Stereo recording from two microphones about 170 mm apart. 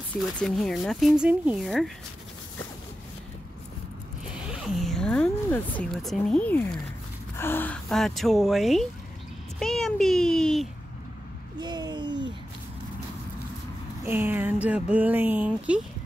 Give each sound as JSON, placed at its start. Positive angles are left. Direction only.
{"t": 0.1, "sound": "speech", "side_deg": 5}
{"t": 4.5, "sound": "a child's voice", "side_deg": 0}
{"t": 11.6, "sound": "a sound", "side_deg": -25}
{"t": 14.0, "sound": "speech", "side_deg": -10}